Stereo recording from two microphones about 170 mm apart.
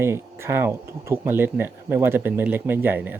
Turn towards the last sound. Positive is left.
turn(degrees=-10)  # may be behind; listen again after turning